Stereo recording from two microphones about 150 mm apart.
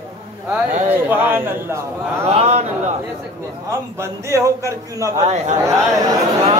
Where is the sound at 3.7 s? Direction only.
20° right (ahead or behind).